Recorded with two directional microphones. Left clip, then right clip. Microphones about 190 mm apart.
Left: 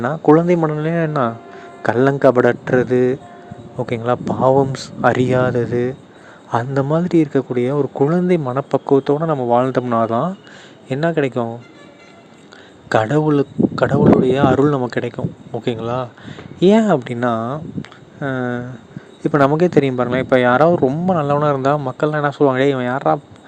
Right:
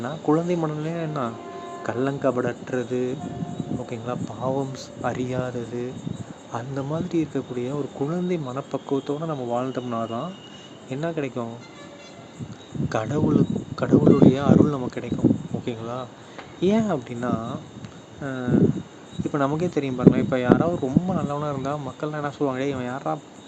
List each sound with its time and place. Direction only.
0.0 s speech: 45° left (ahead or behind)
12.9 s speech: 45° left (ahead or behind)